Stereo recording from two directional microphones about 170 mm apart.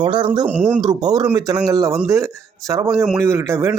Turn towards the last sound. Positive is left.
turn(degrees=-15)  # may be behind; listen again after turning